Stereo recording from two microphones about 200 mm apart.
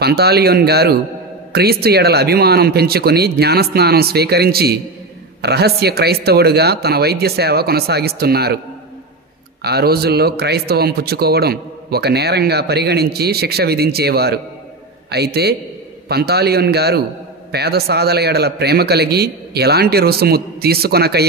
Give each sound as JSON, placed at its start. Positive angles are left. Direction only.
{"t": 0.0, "sound": "a man's voice", "side_deg": -55}
{"t": 9.6, "sound": "a man's voice", "side_deg": -55}